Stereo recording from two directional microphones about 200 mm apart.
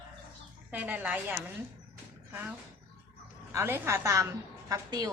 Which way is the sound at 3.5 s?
15° right (ahead or behind).